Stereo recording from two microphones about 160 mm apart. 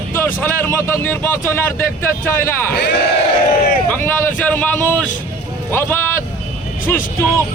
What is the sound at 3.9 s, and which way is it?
Speech, 15° left (ahead or behind).